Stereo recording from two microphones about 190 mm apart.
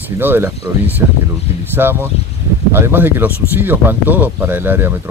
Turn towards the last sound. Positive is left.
turn(degrees=-10)  # may be behind; listen again after turning